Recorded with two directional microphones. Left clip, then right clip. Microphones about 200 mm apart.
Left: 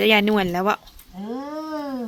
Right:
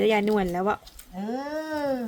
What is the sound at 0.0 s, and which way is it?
Speech, 10° left (ahead or behind).